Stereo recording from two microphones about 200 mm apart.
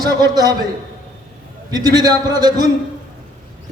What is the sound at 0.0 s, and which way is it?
Speech, 20° right (ahead or behind).